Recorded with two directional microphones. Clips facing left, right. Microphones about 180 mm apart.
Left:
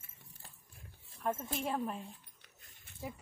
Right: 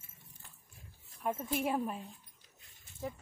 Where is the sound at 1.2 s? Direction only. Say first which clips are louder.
Right 2 dB; 10° right (ahead or behind).